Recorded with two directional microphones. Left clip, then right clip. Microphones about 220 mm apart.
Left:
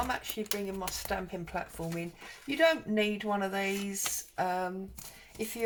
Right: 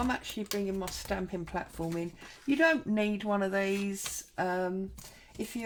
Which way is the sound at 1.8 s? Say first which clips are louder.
Right 3 dB; 30° right (ahead or behind).